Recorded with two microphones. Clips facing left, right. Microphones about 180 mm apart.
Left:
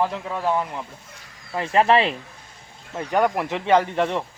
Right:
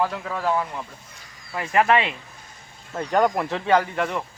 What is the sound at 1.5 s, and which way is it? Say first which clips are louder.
Speech: left 2 dB; 30° left (ahead or behind).